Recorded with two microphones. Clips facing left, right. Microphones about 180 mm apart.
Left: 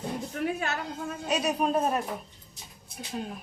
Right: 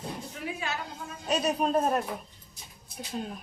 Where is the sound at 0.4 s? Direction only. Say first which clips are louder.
Left 9 dB; 55° left (ahead or behind).